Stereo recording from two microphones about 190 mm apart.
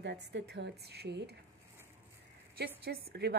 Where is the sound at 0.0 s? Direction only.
65° right (ahead or behind).